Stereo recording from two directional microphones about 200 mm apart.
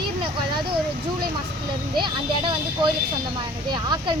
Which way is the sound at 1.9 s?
25° right (ahead or behind).